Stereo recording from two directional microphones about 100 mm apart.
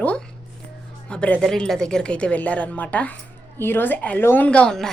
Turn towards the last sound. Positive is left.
turn(degrees=5)  # may be behind; listen again after turning